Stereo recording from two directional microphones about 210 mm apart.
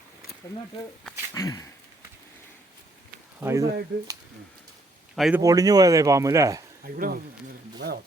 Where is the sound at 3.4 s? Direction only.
15° right (ahead or behind).